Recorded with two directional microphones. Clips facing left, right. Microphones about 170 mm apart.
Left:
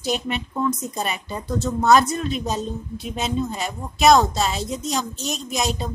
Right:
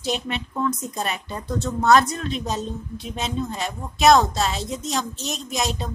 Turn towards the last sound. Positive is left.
turn(degrees=0)  # may be behind; listen again after turning